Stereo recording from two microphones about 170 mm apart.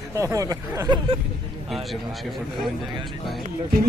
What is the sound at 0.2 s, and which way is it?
Speech, 20° right (ahead or behind).